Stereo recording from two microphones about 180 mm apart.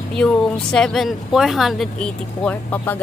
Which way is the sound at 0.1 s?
5° left (ahead or behind).